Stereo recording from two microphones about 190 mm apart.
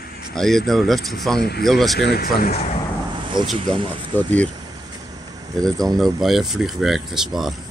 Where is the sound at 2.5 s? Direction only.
35° left (ahead or behind).